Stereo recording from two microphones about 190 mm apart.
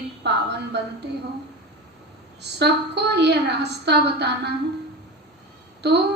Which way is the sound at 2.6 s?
60° right (ahead or behind).